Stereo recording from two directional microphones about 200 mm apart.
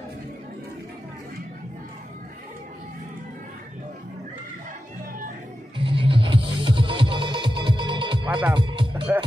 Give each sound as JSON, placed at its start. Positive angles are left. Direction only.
{"t": 5.8, "sound": "music", "side_deg": -25}